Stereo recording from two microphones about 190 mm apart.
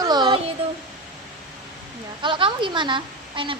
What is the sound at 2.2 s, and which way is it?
A woman's voice, 25° right (ahead or behind).